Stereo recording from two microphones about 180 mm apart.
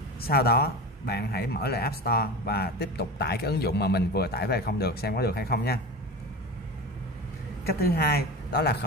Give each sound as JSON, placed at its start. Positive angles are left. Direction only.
{"t": 0.2, "sound": "speech", "side_deg": 60}
{"t": 7.6, "sound": "speech", "side_deg": 60}